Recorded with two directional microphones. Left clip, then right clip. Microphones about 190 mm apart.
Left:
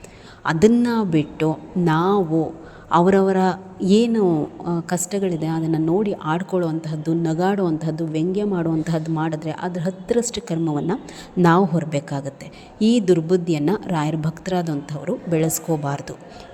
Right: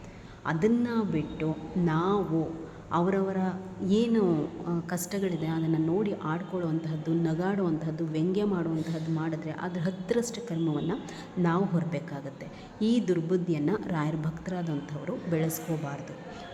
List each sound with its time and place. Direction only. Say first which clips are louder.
0.4 s a woman's voice: left 11 dB; 40° left (ahead or behind); by 8.6 s 25° left (ahead or behind)
8.9 s a woman's voice: left 9 dB; 40° left (ahead or behind)